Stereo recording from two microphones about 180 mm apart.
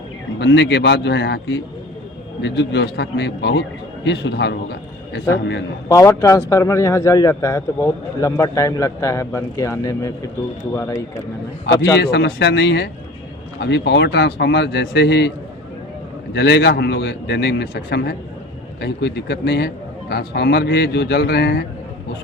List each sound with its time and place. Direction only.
0.3 s a man's voice: 70° left (ahead or behind)
5.9 s a man's voice: 15° left (ahead or behind)
11.6 s a man's voice: 70° left (ahead or behind)
16.3 s a man's voice: 70° left (ahead or behind)